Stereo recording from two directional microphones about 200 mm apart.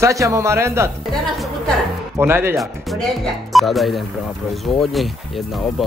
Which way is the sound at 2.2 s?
10° right (ahead or behind).